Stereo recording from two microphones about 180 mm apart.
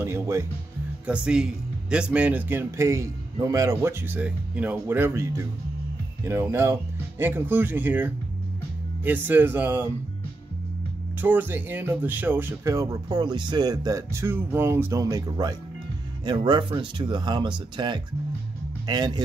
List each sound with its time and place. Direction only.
0.0 s speech: 15° right (ahead or behind)
11.1 s speech: 10° right (ahead or behind)